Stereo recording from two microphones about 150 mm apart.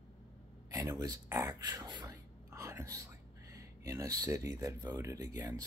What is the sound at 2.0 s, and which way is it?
Speech, 15° right (ahead or behind).